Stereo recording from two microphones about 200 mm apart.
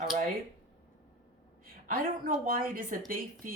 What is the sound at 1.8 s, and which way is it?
Speech, 45° right (ahead or behind).